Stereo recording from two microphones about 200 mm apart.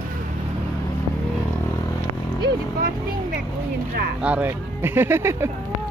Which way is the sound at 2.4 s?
50° right (ahead or behind).